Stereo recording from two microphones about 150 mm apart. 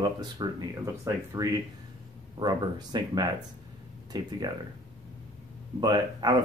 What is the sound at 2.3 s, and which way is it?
Speech, 30° right (ahead or behind).